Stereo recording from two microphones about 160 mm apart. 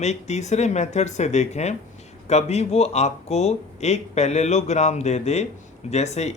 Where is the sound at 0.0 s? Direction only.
45° left (ahead or behind).